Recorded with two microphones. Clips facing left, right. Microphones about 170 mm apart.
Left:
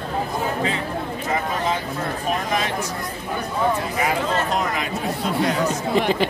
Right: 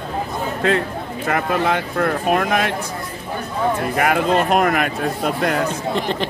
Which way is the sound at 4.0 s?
60° right (ahead or behind).